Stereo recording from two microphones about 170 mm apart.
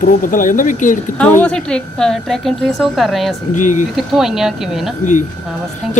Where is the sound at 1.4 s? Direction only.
5° left (ahead or behind).